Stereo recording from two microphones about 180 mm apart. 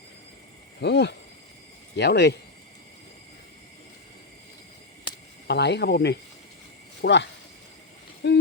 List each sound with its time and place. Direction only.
0.8 s speech: 70° left (ahead or behind)
5.5 s speech: 70° left (ahead or behind)